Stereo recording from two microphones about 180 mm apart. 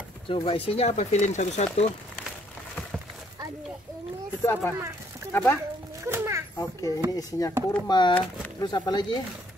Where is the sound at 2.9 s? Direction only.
Centre (ahead or behind).